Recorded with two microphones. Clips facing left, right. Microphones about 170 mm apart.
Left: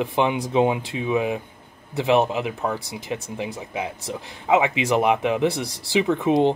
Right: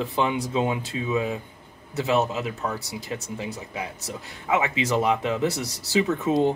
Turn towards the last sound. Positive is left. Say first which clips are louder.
# left 3 dB
turn(degrees=20)  # may be behind; listen again after turning